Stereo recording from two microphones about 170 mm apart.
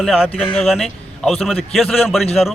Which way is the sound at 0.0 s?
5° right (ahead or behind).